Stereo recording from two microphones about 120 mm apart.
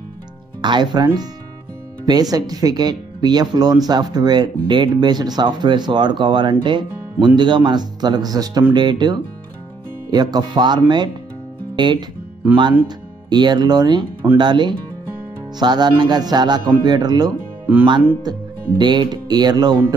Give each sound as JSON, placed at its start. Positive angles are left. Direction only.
{"t": 0.6, "sound": "speech", "side_deg": -40}